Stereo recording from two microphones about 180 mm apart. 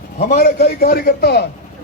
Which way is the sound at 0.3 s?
55° left (ahead or behind).